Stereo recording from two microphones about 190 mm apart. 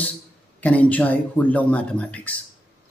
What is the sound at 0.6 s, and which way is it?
Speech, 10° left (ahead or behind).